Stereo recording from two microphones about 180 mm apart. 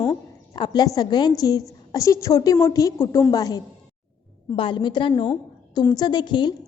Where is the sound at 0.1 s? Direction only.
25° left (ahead or behind).